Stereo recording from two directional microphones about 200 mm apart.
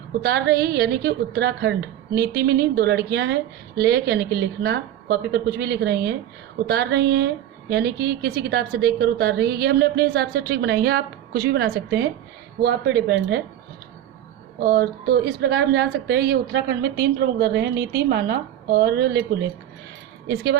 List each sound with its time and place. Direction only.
0.2 s a woman's voice: 55° right (ahead or behind)
14.6 s a woman's voice: 55° right (ahead or behind)